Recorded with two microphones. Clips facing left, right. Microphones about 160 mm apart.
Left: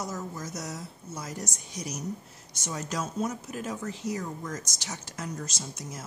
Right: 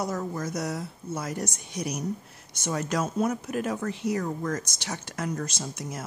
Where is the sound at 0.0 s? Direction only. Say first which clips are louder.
Right 6 dB; 60° right (ahead or behind).